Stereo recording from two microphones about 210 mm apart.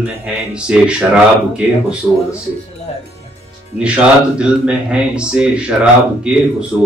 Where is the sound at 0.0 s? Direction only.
5° right (ahead or behind).